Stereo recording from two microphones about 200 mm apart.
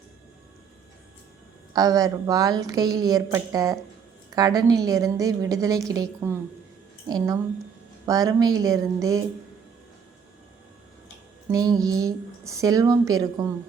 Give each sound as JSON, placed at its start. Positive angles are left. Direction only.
{"t": 1.7, "sound": "a woman's voice", "side_deg": -20}
{"t": 11.4, "sound": "mantra", "side_deg": -20}
{"t": 11.8, "sound": "a woman's voice", "side_deg": -20}